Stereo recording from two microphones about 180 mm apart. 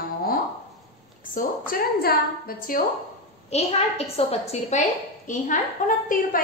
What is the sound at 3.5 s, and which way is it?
A woman's voice, 35° left (ahead or behind).